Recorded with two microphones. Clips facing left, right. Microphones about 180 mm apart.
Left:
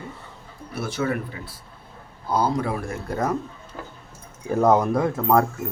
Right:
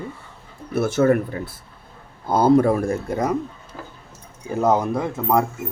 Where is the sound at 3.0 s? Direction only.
15° right (ahead or behind).